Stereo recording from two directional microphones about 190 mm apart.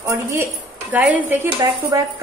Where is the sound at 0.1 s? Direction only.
15° right (ahead or behind).